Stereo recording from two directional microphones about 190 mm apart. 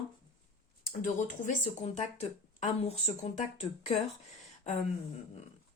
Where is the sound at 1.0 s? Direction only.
40° left (ahead or behind).